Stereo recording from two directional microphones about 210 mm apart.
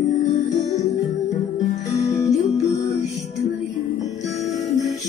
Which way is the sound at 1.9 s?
15° left (ahead or behind).